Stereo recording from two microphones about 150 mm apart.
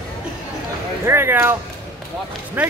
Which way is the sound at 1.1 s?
15° right (ahead or behind).